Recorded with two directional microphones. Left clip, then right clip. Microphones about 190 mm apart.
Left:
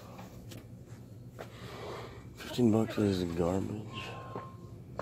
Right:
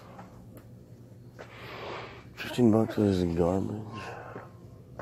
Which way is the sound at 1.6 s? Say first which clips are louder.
Right 5 dB; 25° right (ahead or behind).